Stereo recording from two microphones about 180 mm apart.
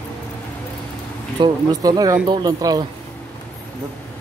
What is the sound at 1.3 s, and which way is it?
Speech, 25° right (ahead or behind).